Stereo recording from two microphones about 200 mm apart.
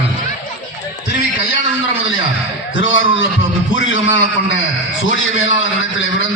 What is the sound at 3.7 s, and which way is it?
A man's voice, 70° left (ahead or behind).